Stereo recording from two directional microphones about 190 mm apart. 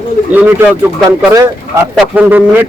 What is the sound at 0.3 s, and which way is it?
Speech, 10° right (ahead or behind).